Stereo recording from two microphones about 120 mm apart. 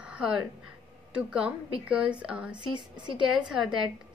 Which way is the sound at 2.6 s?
40° right (ahead or behind).